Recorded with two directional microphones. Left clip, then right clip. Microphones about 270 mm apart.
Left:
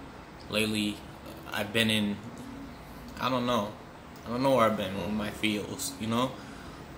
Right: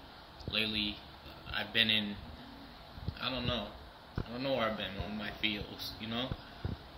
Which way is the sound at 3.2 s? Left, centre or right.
Left.